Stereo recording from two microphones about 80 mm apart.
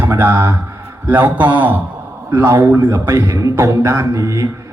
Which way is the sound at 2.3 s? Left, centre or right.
Right.